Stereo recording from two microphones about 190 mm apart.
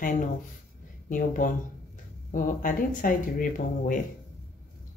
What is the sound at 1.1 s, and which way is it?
Speech, 45° left (ahead or behind).